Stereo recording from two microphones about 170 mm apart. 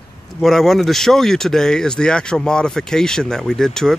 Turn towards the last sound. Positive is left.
turn(degrees=5)  # may be behind; listen again after turning